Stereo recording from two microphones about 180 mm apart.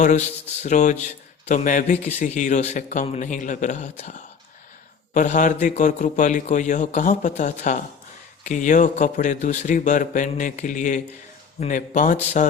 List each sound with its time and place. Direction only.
0.0 s a man's voice: 40° left (ahead or behind)